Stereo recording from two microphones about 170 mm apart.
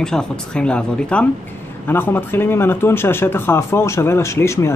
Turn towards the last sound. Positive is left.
turn(degrees=15)  # may be behind; listen again after turning